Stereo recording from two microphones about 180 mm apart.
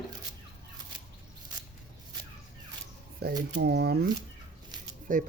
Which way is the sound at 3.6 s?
65° right (ahead or behind).